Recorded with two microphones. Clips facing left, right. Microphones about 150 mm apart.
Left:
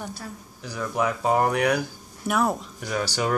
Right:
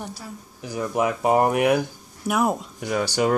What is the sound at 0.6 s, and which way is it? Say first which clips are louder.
Speech: right 2 dB; 20° right (ahead or behind).